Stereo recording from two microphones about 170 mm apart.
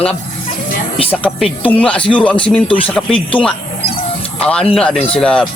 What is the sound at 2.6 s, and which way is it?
Speech, 30° left (ahead or behind).